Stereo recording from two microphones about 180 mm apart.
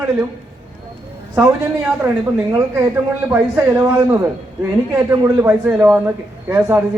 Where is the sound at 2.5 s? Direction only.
15° right (ahead or behind).